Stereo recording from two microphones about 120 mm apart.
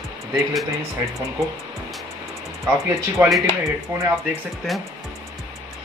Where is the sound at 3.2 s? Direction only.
15° right (ahead or behind).